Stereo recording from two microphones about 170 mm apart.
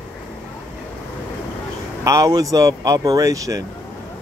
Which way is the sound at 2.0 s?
20° right (ahead or behind).